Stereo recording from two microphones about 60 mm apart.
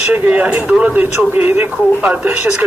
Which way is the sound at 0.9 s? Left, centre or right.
Right.